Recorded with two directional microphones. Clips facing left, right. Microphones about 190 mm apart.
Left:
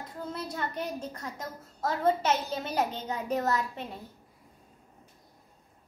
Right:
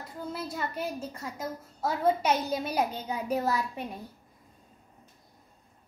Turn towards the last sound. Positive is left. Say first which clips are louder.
# even
turn(degrees=-15)  # may be behind; listen again after turning